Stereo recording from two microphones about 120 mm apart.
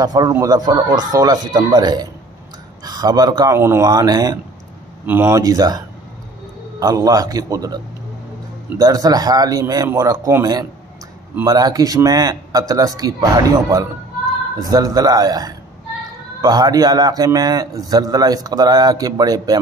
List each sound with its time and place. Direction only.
0.0 s a man's voice: 35° right (ahead or behind)
3.5 s a man's voice: 20° right (ahead or behind)
3.9 s a man's voice: 30° right (ahead or behind)
5.0 s a man's voice: 20° right (ahead or behind)